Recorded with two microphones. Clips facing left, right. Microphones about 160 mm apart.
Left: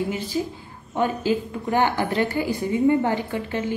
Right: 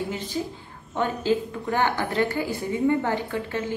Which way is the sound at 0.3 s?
10° left (ahead or behind).